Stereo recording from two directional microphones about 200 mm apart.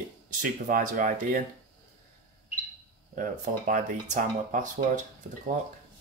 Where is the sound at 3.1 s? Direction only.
40° right (ahead or behind).